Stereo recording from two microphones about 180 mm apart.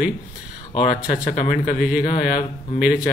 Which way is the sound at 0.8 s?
45° left (ahead or behind).